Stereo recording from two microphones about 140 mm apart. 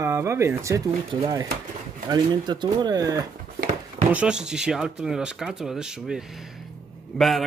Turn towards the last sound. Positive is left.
turn(degrees=0)  # may be behind; listen again after turning